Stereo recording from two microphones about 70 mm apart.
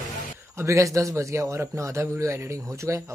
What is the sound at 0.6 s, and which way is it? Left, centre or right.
A man's voice, right.